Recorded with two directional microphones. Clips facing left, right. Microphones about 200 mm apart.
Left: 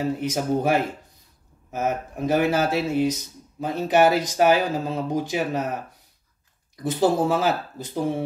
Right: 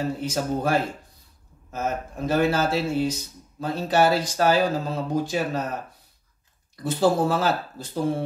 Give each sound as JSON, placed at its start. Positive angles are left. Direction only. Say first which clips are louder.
{"t": 0.2, "sound": "speech", "louder": "left 2 dB", "side_deg": 15}
{"t": 6.8, "sound": "speech", "louder": "even", "side_deg": 15}